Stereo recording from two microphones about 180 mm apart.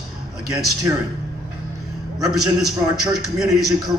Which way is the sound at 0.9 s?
20° right (ahead or behind).